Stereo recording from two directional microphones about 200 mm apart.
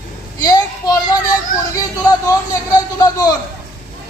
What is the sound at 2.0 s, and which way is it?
Speech, 20° left (ahead or behind).